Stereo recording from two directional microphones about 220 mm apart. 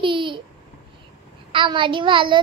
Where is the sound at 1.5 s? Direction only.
20° right (ahead or behind).